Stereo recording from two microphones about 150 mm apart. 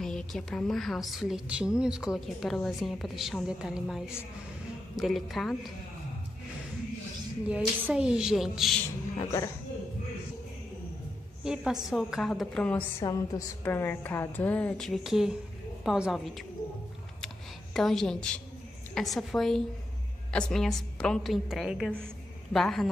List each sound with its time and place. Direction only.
0.0 s a woman's voice: 5° left (ahead or behind)
7.4 s a woman's voice: 5° right (ahead or behind)
9.1 s speech: 25° left (ahead or behind)
11.4 s a woman's voice: 5° right (ahead or behind)
13.0 s a woman's voice: 25° left (ahead or behind); by 16.4 s centre (ahead or behind)
17.7 s a woman's voice: centre (ahead or behind)